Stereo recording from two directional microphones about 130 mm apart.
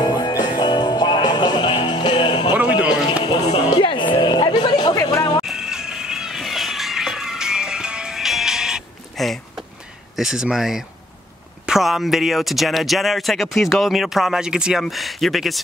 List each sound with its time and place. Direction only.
0.0 s music: 30° left (ahead or behind)
3.7 s a sound: 40° left (ahead or behind)
5.5 s music: 5° right (ahead or behind)
10.1 s speech: 5° right (ahead or behind)